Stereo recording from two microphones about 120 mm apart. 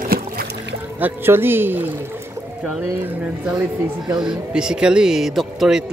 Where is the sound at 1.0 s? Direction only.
15° right (ahead or behind).